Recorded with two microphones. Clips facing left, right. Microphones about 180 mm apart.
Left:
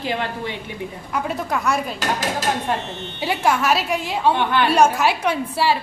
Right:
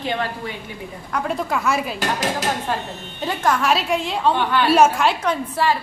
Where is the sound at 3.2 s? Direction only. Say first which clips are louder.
Even; 10° left (ahead or behind).